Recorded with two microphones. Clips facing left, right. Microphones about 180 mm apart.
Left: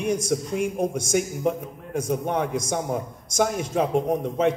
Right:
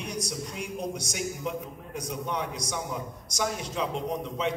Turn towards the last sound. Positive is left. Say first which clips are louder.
# left 8 dB
turn(degrees=50)  # may be behind; listen again after turning